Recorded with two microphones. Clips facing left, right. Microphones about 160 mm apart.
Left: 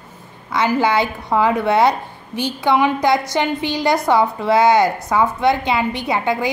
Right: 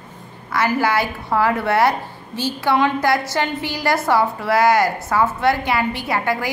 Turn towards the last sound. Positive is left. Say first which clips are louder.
# left 2 dB
turn(degrees=20)  # may be behind; listen again after turning